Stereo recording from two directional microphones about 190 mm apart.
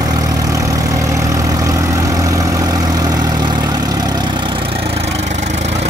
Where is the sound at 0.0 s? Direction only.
20° right (ahead or behind).